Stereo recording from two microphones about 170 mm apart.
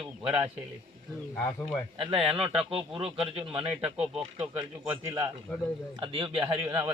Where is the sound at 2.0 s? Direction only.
30° right (ahead or behind).